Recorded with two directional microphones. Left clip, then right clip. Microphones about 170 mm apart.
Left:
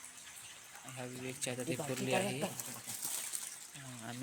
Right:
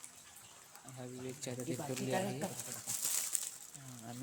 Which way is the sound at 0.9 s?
5° left (ahead or behind).